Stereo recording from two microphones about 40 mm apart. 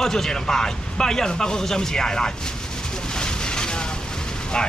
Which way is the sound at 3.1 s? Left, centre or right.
Left.